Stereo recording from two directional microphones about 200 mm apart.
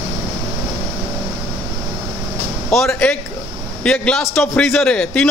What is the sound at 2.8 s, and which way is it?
A man's voice, 5° left (ahead or behind).